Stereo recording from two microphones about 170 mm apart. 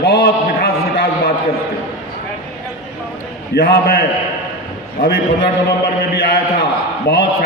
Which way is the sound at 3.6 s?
60° left (ahead or behind).